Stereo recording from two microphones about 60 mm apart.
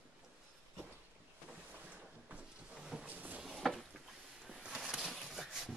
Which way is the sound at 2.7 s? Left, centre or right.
Centre.